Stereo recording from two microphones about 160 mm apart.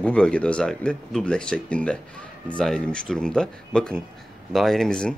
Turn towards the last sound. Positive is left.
turn(degrees=5)  # may be behind; listen again after turning